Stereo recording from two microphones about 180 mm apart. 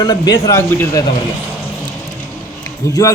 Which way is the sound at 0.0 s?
20° left (ahead or behind).